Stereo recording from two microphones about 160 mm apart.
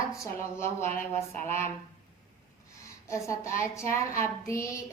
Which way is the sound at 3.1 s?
20° left (ahead or behind).